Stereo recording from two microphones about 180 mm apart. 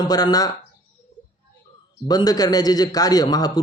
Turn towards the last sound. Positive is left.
turn(degrees=20)  # may be behind; listen again after turning